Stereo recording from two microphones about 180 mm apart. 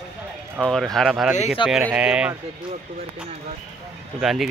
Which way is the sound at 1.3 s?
35° left (ahead or behind).